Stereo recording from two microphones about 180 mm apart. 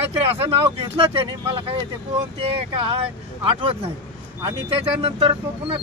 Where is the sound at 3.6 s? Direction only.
30° right (ahead or behind).